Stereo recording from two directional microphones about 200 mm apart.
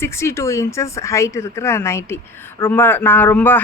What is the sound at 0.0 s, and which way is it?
Speech, 15° left (ahead or behind).